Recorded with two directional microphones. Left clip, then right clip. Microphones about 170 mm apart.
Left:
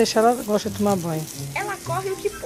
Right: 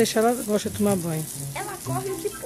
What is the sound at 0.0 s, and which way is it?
Speech, 15° right (ahead or behind).